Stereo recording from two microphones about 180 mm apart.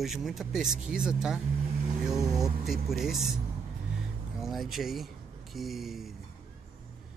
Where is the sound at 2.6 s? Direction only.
Centre (ahead or behind).